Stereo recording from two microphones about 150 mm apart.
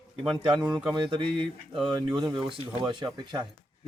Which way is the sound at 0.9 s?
35° right (ahead or behind).